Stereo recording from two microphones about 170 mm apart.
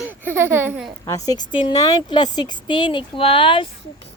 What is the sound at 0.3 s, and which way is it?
Speech, 10° right (ahead or behind).